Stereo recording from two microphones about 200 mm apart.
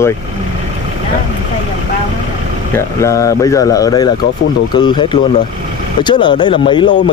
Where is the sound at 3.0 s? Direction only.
15° left (ahead or behind).